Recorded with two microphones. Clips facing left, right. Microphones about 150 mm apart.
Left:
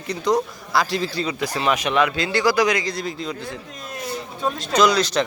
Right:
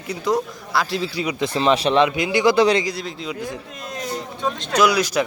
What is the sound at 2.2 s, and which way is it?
Speech, 15° right (ahead or behind).